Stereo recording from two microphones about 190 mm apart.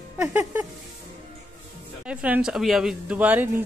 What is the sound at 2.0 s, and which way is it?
Speech, 5° right (ahead or behind).